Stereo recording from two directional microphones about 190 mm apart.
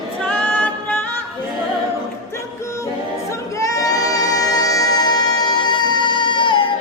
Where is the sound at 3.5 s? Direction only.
15° left (ahead or behind).